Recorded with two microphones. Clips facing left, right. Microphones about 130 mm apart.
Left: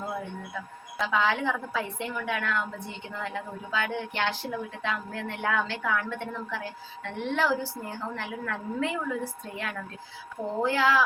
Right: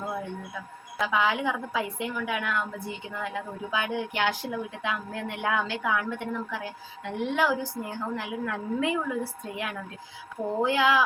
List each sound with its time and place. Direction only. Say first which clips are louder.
1.0 s a woman's voice: even; 10° right (ahead or behind)